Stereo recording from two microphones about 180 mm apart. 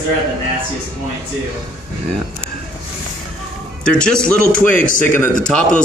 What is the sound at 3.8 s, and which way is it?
A man's voice, 5° left (ahead or behind).